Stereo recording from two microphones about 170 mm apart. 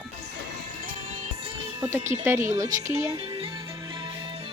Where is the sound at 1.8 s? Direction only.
15° right (ahead or behind).